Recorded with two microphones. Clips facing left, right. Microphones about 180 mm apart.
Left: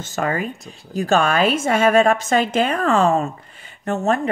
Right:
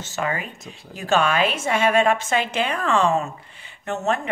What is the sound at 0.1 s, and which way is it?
A woman's voice, 45° left (ahead or behind).